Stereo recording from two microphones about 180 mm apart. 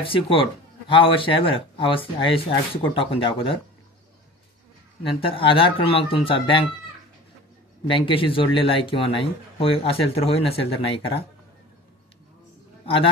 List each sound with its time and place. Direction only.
0.0 s speech: 30° left (ahead or behind)
5.0 s speech: 30° left (ahead or behind)
7.8 s speech: 30° left (ahead or behind)